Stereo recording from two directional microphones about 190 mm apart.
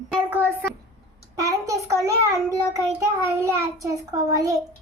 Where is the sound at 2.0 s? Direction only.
15° right (ahead or behind).